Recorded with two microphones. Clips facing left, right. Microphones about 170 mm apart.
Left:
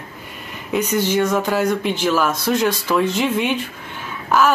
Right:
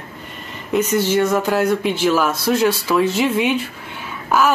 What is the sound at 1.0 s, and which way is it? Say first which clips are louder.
Speech: left 1 dB; 5° right (ahead or behind).